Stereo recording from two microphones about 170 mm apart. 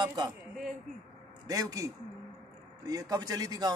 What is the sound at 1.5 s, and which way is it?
A man's voice, 20° right (ahead or behind).